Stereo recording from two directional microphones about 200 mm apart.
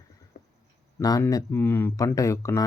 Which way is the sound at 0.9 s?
15° left (ahead or behind).